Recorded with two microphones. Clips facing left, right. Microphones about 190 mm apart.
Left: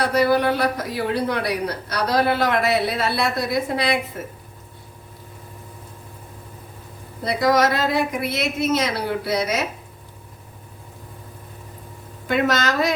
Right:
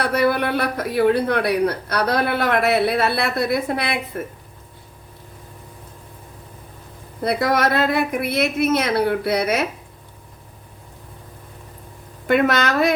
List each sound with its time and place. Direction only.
0.0 s speech: 55° right (ahead or behind)
7.3 s a woman's voice: 60° right (ahead or behind)
12.3 s a woman's voice: 60° right (ahead or behind)